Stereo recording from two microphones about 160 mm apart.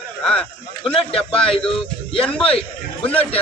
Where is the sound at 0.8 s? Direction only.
35° left (ahead or behind).